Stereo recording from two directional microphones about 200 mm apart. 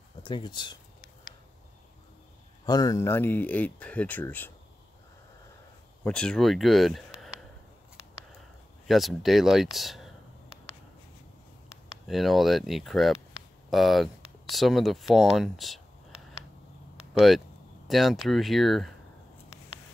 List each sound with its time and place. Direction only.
0.2 s speech: 20° left (ahead or behind)
2.6 s speech: 20° left (ahead or behind)
6.0 s speech: 5° left (ahead or behind)
8.8 s speech: centre (ahead or behind)
12.1 s speech: centre (ahead or behind)
17.8 s speech: centre (ahead or behind)